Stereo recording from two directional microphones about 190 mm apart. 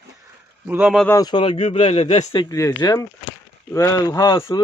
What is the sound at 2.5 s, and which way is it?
Speech, 15° left (ahead or behind).